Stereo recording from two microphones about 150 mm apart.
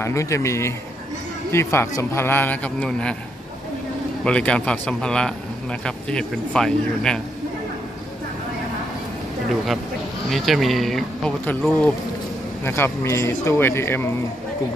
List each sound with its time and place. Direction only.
0.0 s a man's voice: 20° left (ahead or behind)
4.2 s a man's voice: 5° left (ahead or behind)
10.3 s a man's voice: centre (ahead or behind); by 14.1 s 15° left (ahead or behind)